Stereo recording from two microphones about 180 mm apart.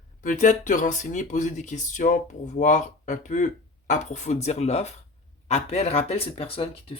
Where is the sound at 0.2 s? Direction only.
45° left (ahead or behind).